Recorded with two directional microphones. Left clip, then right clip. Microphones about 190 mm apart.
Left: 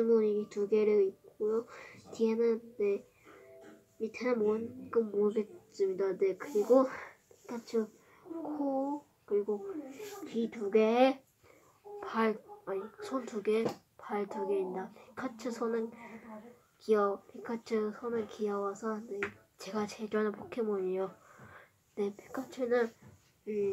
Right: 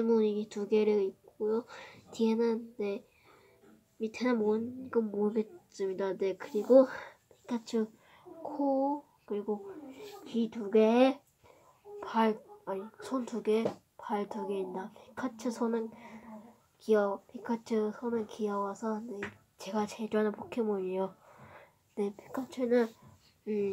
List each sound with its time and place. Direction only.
0.0 s a woman's voice: 20° right (ahead or behind)
4.0 s a woman's voice: 15° right (ahead or behind)
9.3 s a woman's voice: 25° right (ahead or behind)
10.3 s speech: 10° right (ahead or behind)
16.8 s speech: 10° right (ahead or behind)
23.4 s speech: 25° right (ahead or behind)